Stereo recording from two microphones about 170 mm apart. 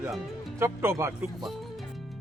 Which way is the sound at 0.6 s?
15° right (ahead or behind).